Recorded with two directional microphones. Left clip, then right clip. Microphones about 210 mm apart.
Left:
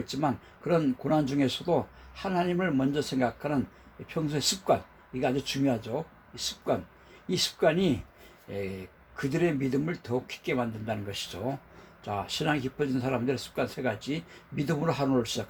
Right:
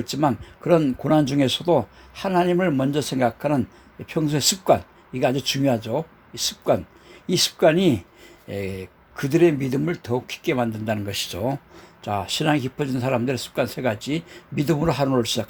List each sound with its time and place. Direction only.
0.0 s speech: 45° right (ahead or behind)